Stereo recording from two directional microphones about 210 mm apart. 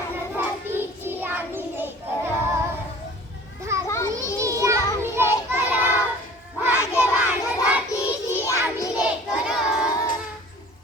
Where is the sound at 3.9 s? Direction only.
15° left (ahead or behind).